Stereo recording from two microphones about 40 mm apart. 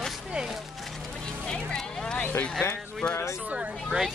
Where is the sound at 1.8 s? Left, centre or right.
Centre.